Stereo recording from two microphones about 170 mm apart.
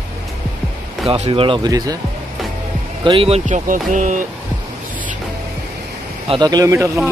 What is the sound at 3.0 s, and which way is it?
Speech, 35° right (ahead or behind).